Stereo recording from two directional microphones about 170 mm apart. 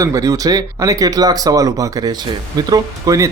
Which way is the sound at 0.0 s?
20° right (ahead or behind).